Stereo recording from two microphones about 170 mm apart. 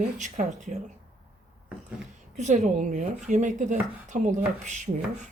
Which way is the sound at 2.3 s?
45° right (ahead or behind).